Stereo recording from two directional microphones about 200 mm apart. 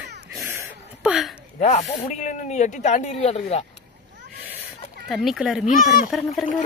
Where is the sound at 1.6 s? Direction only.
40° left (ahead or behind).